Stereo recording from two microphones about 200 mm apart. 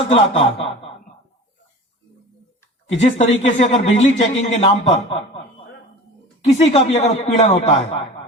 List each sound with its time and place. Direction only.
0.1 s speech: 30° left (ahead or behind)
3.0 s speech: 35° left (ahead or behind)
6.4 s speech: 30° left (ahead or behind)